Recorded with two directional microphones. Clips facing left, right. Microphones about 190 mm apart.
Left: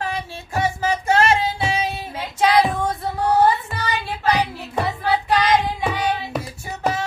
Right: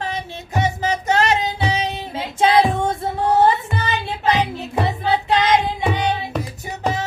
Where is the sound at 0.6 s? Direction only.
20° right (ahead or behind).